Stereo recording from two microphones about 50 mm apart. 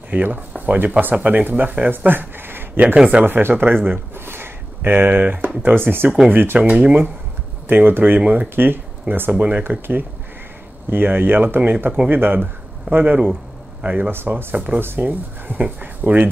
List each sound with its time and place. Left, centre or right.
0.1 s speech: right
6.6 s speech: right
7.6 s speech: right
14.1 s speech: right